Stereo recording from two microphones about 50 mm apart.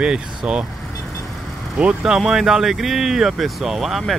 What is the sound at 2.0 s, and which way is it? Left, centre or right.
Speech, centre.